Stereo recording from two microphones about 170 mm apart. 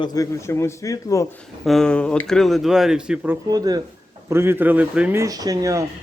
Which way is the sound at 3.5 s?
20° right (ahead or behind).